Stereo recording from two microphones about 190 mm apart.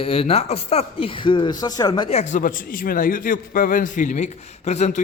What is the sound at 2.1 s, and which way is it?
A man's voice, 40° left (ahead or behind).